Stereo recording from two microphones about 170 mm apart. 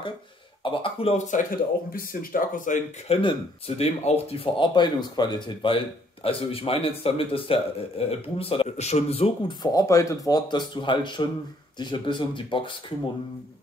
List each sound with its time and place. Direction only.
0.7 s a man's voice: 35° left (ahead or behind)
1.9 s speech: 50° left (ahead or behind)
3.2 s a man's voice: 35° left (ahead or behind)